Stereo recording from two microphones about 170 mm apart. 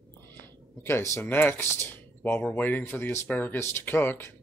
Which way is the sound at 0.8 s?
15° left (ahead or behind).